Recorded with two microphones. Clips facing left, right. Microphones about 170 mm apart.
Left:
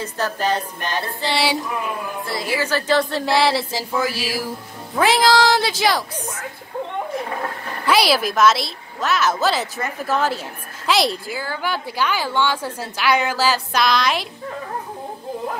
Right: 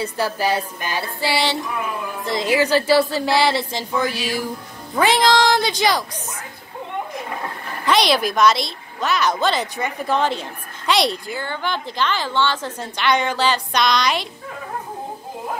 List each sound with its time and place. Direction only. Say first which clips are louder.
0.0 s a sound: right 1 dB; 10° right (ahead or behind)
2.2 s a woman's voice: right 6 dB; 15° right (ahead or behind); by 6.0 s 5° left (ahead or behind)
7.8 s a woman's voice: even; 5° left (ahead or behind)